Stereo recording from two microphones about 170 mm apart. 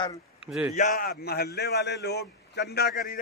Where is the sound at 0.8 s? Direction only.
55° left (ahead or behind).